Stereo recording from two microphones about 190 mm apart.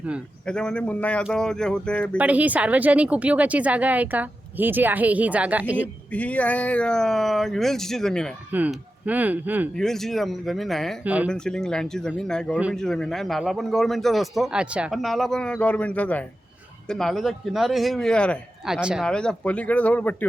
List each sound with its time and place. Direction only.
0.4 s a man's voice: 5° left (ahead or behind)
2.1 s speech: 10° right (ahead or behind)
6.1 s a man's voice: 5° left (ahead or behind)
8.5 s speech: 10° right (ahead or behind)
9.7 s a man's voice: centre (ahead or behind)
11.3 s a man's voice: 5° left (ahead or behind)